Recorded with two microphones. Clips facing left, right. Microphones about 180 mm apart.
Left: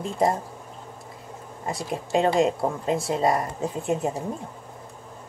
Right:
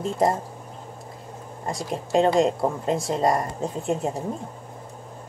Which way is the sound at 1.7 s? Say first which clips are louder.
Right 1 dB; centre (ahead or behind).